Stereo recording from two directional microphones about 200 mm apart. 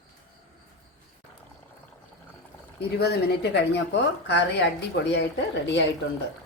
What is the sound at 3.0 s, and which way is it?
Speech, 55° left (ahead or behind).